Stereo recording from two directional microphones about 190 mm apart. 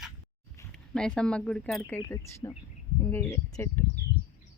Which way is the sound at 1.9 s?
15° left (ahead or behind).